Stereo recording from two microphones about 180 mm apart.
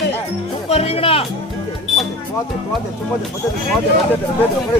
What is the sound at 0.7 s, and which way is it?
Speech, 35° left (ahead or behind).